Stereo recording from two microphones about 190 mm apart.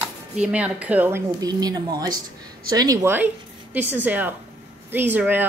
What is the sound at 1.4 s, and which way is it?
Speech, 20° right (ahead or behind).